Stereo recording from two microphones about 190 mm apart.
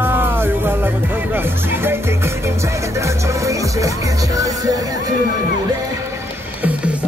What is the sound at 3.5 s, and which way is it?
Music, 15° right (ahead or behind).